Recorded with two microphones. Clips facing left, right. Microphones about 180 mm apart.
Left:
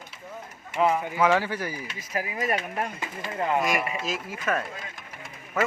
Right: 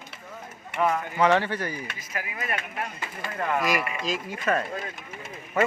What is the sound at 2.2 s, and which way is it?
Speech, 35° left (ahead or behind).